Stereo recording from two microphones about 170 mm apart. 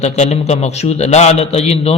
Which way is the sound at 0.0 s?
40° left (ahead or behind).